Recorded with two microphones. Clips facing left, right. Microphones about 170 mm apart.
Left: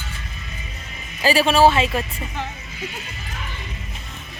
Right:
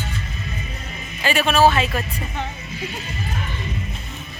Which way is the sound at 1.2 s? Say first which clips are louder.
Left 2 dB; 35° left (ahead or behind).